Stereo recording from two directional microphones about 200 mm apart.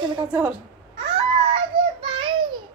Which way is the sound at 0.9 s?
30° right (ahead or behind).